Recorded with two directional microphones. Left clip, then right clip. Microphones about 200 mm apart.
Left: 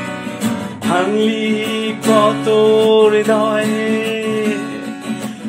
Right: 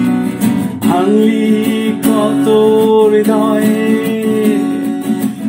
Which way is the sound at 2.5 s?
20° right (ahead or behind).